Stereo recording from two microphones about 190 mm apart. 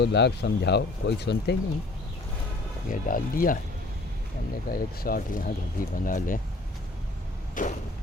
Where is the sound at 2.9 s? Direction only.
45° left (ahead or behind).